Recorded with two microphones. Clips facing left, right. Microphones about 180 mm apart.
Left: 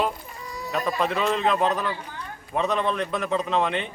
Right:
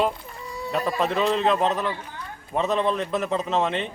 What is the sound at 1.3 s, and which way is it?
A man's voice, centre (ahead or behind).